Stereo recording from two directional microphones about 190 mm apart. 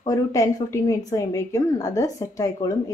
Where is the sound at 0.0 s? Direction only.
15° left (ahead or behind).